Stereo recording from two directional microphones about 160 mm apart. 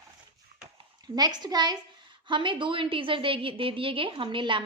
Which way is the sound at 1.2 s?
25° right (ahead or behind).